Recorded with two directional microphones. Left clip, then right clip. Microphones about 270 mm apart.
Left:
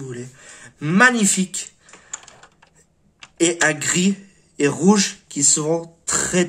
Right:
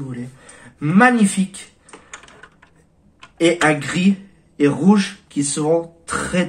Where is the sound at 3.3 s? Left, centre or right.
Left.